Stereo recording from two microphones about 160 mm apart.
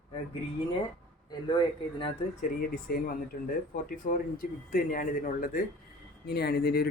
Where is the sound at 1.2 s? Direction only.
25° left (ahead or behind).